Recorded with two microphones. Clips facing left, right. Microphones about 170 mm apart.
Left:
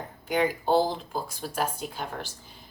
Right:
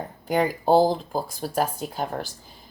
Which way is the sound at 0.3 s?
40° right (ahead or behind).